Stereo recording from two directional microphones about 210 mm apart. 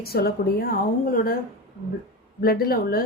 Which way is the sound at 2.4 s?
45° left (ahead or behind).